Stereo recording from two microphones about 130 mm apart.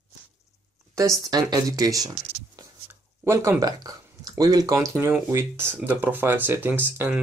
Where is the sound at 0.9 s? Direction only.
25° right (ahead or behind).